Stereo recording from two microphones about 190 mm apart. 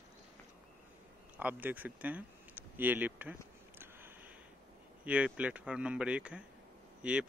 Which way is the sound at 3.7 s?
10° right (ahead or behind).